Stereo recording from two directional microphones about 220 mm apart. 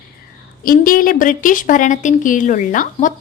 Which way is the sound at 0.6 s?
40° left (ahead or behind).